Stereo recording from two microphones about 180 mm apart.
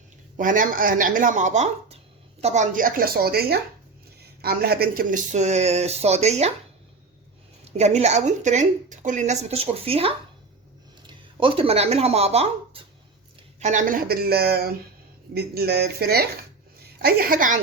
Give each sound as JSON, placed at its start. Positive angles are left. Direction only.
{"t": 0.3, "sound": "a woman's voice", "side_deg": -50}
{"t": 7.6, "sound": "a woman's voice", "side_deg": -35}